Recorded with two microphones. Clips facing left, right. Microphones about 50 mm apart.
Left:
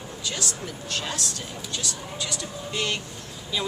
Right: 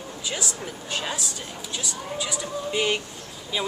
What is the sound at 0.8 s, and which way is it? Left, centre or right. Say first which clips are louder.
Speech: right 1 dB; centre.